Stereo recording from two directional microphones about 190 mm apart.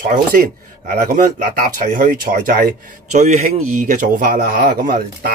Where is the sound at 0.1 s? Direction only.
45° right (ahead or behind).